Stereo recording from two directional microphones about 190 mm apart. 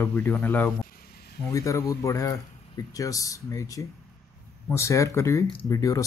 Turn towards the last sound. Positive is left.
turn(degrees=15)  # may be behind; listen again after turning